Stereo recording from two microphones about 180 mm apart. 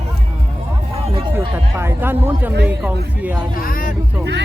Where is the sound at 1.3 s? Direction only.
15° right (ahead or behind).